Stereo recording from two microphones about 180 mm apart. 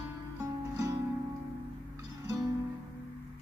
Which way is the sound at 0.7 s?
20° right (ahead or behind).